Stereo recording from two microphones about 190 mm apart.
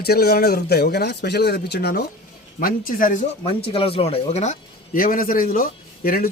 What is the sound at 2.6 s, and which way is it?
Speech, 45° left (ahead or behind).